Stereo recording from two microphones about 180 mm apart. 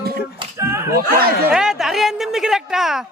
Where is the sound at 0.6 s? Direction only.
15° right (ahead or behind).